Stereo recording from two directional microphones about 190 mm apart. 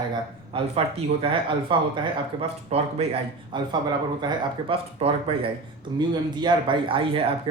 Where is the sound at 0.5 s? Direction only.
30° right (ahead or behind).